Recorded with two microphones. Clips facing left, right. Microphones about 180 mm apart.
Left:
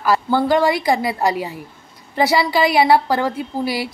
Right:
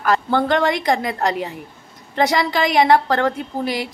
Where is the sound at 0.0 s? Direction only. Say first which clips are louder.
Left 1 dB; 5° left (ahead or behind).